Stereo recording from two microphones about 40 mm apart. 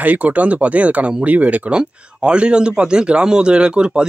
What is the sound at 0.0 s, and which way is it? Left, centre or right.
Speech, right.